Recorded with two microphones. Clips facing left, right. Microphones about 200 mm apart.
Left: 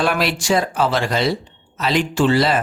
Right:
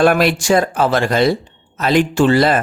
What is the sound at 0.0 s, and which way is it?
Speech, 50° right (ahead or behind).